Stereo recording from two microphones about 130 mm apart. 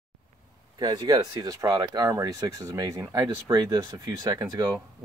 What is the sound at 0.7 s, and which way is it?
Speech, 30° right (ahead or behind).